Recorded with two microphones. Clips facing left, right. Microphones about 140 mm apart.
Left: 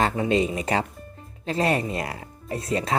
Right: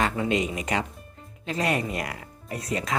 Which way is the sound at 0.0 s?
35° left (ahead or behind).